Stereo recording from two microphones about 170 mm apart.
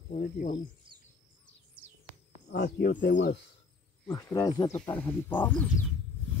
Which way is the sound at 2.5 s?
70° left (ahead or behind).